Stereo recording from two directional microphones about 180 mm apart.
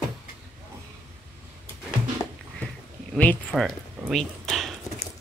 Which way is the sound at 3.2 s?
5° left (ahead or behind).